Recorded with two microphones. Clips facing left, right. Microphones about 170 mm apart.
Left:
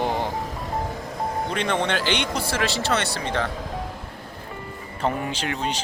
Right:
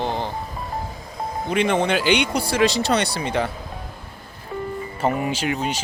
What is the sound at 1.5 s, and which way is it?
Speech, 10° right (ahead or behind).